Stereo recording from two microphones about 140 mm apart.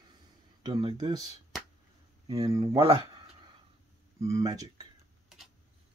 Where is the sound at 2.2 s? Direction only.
25° right (ahead or behind).